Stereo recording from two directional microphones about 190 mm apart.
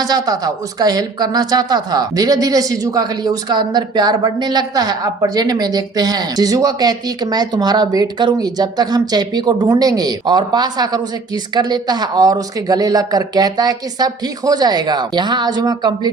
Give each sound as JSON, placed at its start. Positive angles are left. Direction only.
{"t": 0.0, "sound": "a woman's voice", "side_deg": -20}